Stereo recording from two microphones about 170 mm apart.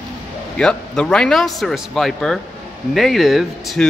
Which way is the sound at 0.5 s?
5° left (ahead or behind).